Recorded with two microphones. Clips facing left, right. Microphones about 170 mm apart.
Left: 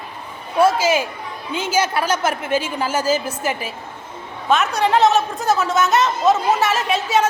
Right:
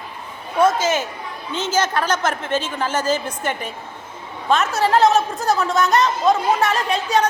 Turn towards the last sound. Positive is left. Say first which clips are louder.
# left 1 dB
turn(degrees=5)  # may be behind; listen again after turning